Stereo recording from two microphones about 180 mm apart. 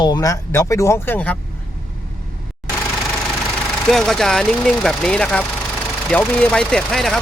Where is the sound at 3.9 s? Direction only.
Centre (ahead or behind).